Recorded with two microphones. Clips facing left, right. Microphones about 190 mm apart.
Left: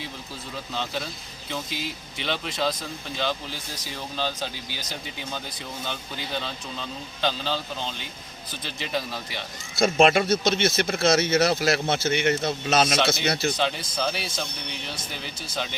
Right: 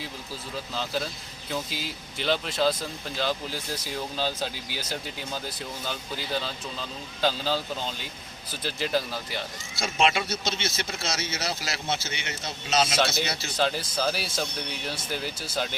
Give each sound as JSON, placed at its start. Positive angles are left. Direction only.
{"t": 1.5, "sound": "speech", "side_deg": 0}
{"t": 3.9, "sound": "speech", "side_deg": -10}
{"t": 8.6, "sound": "speech", "side_deg": 0}
{"t": 9.7, "sound": "speech", "side_deg": 50}
{"t": 13.6, "sound": "speech", "side_deg": 0}